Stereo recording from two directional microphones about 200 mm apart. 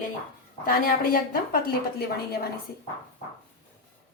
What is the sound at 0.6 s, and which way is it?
Speech, 45° left (ahead or behind).